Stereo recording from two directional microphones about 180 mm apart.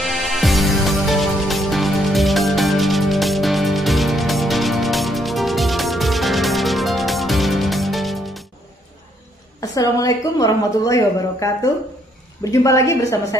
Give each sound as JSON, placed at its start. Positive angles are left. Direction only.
{"t": 0.0, "sound": "music", "side_deg": 0}
{"t": 9.6, "sound": "a woman's voice", "side_deg": 20}